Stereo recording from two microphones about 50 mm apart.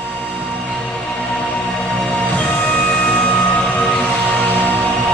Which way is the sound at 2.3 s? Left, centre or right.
Left.